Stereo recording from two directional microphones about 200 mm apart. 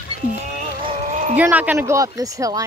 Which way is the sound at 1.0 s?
35° right (ahead or behind).